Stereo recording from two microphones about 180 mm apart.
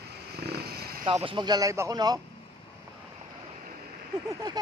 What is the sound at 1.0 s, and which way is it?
Speech, 30° right (ahead or behind).